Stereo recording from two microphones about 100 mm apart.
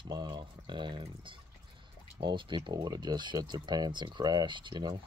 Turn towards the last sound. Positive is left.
turn(degrees=-50)  # may be behind; listen again after turning